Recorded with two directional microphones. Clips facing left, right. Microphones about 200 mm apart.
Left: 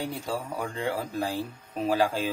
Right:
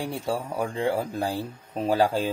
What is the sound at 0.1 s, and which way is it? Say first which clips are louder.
Speech: right 3 dB; 30° right (ahead or behind).